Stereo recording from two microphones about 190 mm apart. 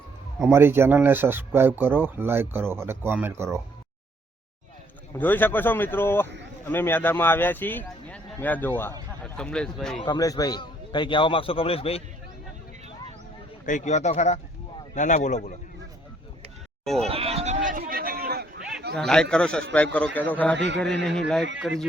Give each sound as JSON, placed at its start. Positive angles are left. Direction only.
{"t": 0.3, "sound": "speech", "side_deg": -10}
{"t": 5.1, "sound": "a man's voice", "side_deg": 10}
{"t": 10.0, "sound": "a man's voice", "side_deg": 20}
{"t": 13.7, "sound": "speech", "side_deg": 40}
{"t": 16.8, "sound": "speech", "side_deg": 0}
{"t": 17.1, "sound": "a sound", "side_deg": -30}
{"t": 18.9, "sound": "a man's voice", "side_deg": 5}